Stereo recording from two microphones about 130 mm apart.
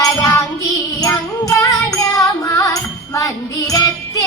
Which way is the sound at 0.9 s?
25° left (ahead or behind).